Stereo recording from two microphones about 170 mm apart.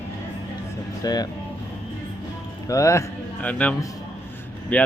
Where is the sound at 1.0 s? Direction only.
25° left (ahead or behind).